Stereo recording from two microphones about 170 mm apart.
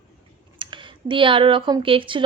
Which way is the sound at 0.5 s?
30° right (ahead or behind).